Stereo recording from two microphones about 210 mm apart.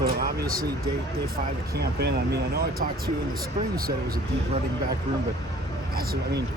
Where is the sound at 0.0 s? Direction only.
45° right (ahead or behind).